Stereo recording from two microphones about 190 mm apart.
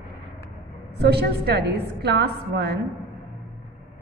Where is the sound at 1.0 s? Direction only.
60° right (ahead or behind).